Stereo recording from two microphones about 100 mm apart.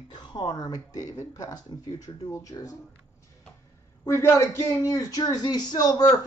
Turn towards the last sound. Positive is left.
turn(degrees=40)  # may be behind; listen again after turning